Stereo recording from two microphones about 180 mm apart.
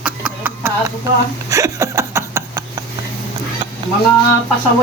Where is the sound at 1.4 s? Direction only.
15° right (ahead or behind).